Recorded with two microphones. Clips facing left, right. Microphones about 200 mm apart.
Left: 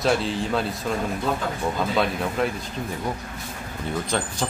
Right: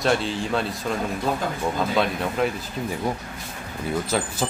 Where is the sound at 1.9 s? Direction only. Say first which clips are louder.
Even; centre (ahead or behind).